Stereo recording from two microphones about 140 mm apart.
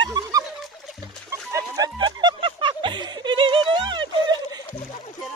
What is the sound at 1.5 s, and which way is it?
Snicker, 25° right (ahead or behind).